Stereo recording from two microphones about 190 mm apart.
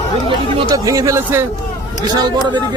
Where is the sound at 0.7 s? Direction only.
15° right (ahead or behind).